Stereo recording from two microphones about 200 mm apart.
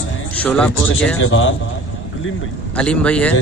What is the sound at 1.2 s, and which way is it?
Speech, 75° left (ahead or behind).